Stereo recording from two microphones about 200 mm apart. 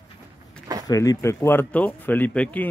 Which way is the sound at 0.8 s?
20° left (ahead or behind).